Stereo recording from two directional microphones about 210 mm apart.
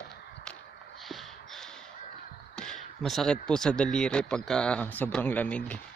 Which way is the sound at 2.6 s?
Centre (ahead or behind).